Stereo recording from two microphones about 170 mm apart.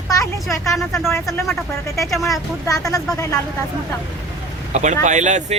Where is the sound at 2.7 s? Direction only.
20° left (ahead or behind).